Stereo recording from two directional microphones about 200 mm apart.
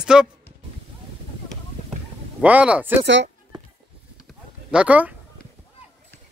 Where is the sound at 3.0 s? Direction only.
60° right (ahead or behind).